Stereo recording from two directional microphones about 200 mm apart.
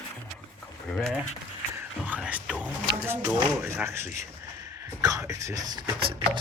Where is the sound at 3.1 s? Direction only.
10° right (ahead or behind).